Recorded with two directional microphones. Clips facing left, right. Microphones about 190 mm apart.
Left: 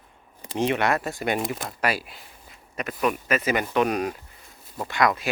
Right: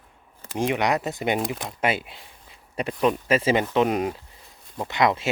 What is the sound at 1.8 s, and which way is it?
Speech, 25° right (ahead or behind).